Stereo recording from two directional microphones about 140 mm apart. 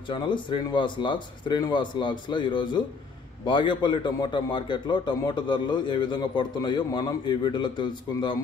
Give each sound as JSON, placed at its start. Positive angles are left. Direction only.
{"t": 0.1, "sound": "a man's voice", "side_deg": 35}